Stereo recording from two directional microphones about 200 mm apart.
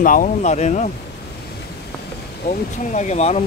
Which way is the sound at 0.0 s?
40° left (ahead or behind).